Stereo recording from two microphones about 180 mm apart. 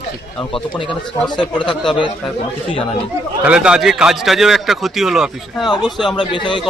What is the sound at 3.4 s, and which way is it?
A man's voice, 5° right (ahead or behind).